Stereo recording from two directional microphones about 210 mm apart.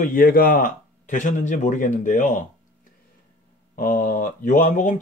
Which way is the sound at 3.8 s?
40° left (ahead or behind).